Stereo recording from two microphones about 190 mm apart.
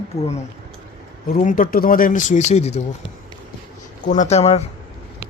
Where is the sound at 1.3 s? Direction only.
45° left (ahead or behind).